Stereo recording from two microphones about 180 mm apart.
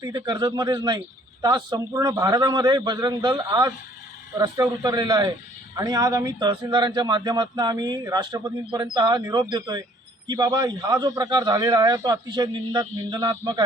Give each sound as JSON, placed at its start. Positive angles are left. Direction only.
{"t": 0.0, "sound": "speech", "side_deg": -25}